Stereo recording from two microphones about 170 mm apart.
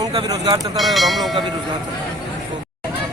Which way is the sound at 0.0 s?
25° right (ahead or behind).